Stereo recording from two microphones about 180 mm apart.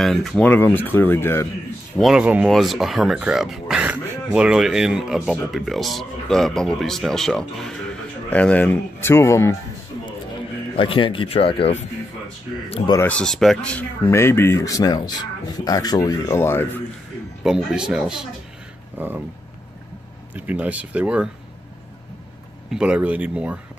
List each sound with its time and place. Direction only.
0.0 s speech: centre (ahead or behind)
2.0 s speech: 5° right (ahead or behind); by 9.6 s 15° left (ahead or behind)
10.8 s speech: 30° left (ahead or behind)
12.9 s speech: 10° left (ahead or behind)
17.4 s speech: 5° right (ahead or behind)
20.3 s speech: 10° right (ahead or behind)
22.7 s speech: 5° right (ahead or behind)